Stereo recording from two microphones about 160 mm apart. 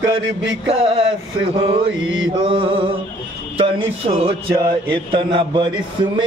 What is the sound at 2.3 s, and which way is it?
A man's voice, 30° right (ahead or behind).